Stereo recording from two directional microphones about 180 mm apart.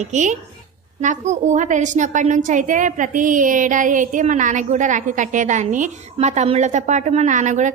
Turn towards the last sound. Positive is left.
turn(degrees=-40)  # may be behind; listen again after turning